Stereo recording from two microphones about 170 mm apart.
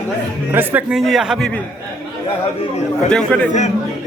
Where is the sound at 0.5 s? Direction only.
10° right (ahead or behind).